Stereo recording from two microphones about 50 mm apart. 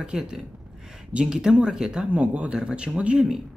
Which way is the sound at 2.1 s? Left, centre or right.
Right.